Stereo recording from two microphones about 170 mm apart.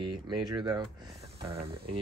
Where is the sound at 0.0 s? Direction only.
30° right (ahead or behind).